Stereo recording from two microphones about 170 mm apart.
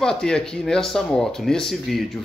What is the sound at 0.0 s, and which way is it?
Speech, 5° left (ahead or behind).